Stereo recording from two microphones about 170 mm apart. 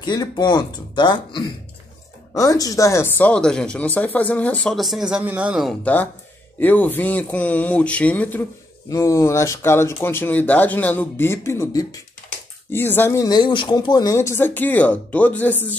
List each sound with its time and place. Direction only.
0.0 s speech: 25° left (ahead or behind); by 5.8 s 5° right (ahead or behind)
6.6 s speech: 10° left (ahead or behind)